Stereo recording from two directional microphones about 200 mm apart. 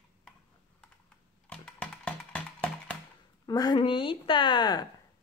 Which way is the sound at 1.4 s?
5° left (ahead or behind).